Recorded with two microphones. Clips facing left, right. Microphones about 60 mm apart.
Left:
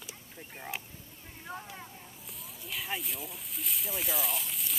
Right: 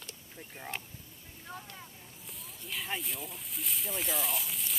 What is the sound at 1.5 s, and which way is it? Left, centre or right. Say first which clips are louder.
Speech: left 3 dB; left.